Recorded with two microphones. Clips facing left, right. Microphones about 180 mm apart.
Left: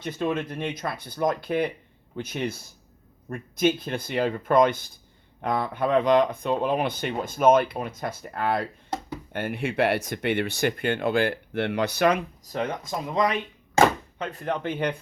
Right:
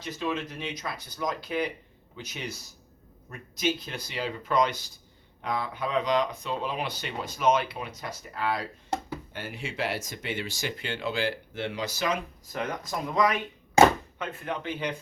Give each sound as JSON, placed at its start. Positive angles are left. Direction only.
{"t": 0.0, "sound": "speech", "side_deg": 50}
{"t": 12.5, "sound": "speech", "side_deg": 30}
{"t": 14.2, "sound": "speech", "side_deg": 40}